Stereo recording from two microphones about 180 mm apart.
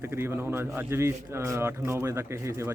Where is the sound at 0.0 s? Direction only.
15° right (ahead or behind).